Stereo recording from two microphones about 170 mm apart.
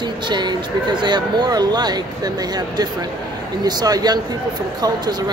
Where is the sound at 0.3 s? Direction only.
25° right (ahead or behind).